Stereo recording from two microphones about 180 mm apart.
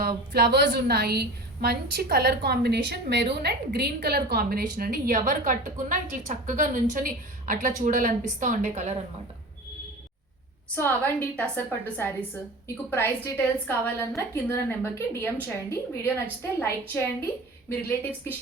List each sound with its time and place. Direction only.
0.3 s a woman's voice: 65° right (ahead or behind); by 9.0 s 40° right (ahead or behind)
10.8 s a woman's voice: 10° left (ahead or behind)